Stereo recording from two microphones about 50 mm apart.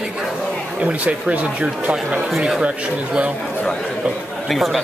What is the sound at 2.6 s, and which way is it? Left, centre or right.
Speech, right.